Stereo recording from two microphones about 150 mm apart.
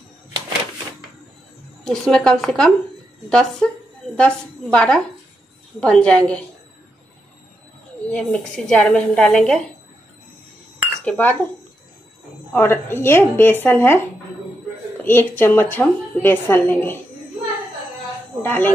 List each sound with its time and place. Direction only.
1.9 s a woman's voice: 5° left (ahead or behind)
8.1 s a woman's voice: 5° left (ahead or behind)
11.1 s a woman's voice: 10° left (ahead or behind)
12.5 s a woman's voice: 15° left (ahead or behind)
15.0 s a woman's voice: 15° left (ahead or behind)
18.4 s speech: 10° left (ahead or behind)